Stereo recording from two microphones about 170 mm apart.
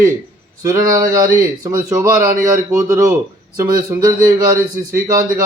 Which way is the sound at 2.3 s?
50° right (ahead or behind).